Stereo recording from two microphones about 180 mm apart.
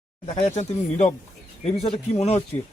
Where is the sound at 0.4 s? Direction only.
40° left (ahead or behind).